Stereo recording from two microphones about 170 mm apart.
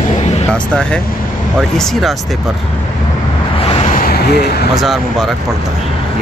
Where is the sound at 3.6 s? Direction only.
35° left (ahead or behind).